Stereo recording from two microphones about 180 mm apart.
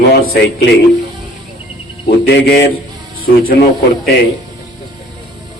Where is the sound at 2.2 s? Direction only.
65° left (ahead or behind).